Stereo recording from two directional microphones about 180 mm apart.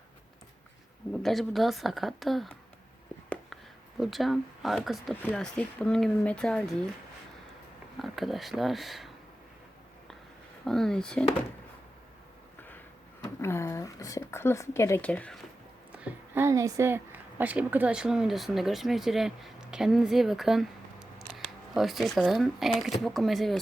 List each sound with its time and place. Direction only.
1.2 s speech: centre (ahead or behind)
4.0 s speech: centre (ahead or behind)
8.0 s speech: centre (ahead or behind)
10.7 s speech: 5° left (ahead or behind)
13.2 s speech: 15° left (ahead or behind)
15.9 s a woman's voice: 5° right (ahead or behind)